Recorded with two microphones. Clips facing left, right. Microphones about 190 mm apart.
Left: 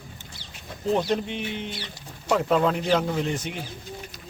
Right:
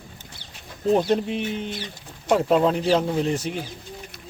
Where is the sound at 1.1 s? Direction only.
40° right (ahead or behind).